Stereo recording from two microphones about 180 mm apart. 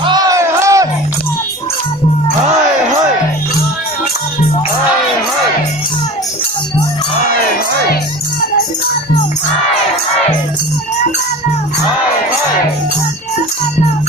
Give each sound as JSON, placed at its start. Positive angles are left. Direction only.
{"t": 0.0, "sound": "music", "side_deg": -20}